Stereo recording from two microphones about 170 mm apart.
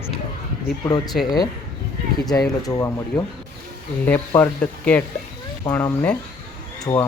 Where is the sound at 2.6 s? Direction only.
20° left (ahead or behind).